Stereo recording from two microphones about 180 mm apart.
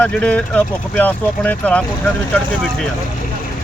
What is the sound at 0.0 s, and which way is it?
Speech, 5° left (ahead or behind).